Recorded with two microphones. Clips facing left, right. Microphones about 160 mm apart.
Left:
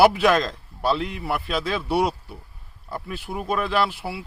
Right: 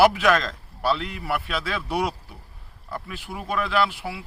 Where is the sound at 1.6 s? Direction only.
30° left (ahead or behind).